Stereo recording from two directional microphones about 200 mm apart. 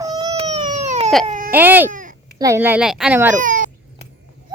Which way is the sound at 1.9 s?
40° right (ahead or behind).